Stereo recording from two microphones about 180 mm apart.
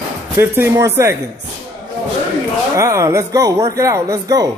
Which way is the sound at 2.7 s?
15° right (ahead or behind).